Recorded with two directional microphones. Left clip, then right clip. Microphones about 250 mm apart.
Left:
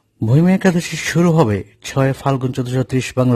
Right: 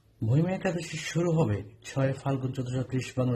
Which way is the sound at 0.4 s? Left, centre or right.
Left.